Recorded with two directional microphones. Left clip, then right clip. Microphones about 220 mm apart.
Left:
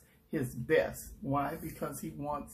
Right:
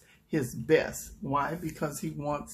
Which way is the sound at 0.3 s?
40° right (ahead or behind).